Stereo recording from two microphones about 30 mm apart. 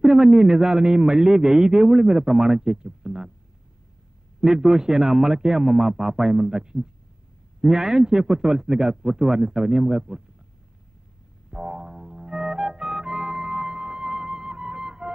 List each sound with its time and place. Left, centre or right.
0.0 s a man's voice: right
4.4 s a man's voice: right
11.5 s music: right